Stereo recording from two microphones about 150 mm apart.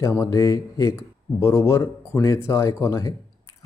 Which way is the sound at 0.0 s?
20° left (ahead or behind).